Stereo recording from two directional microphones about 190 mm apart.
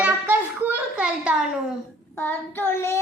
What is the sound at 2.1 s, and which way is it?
Child singing, 10° left (ahead or behind).